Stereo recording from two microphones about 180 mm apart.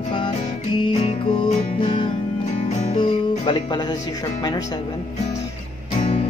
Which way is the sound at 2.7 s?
40° left (ahead or behind).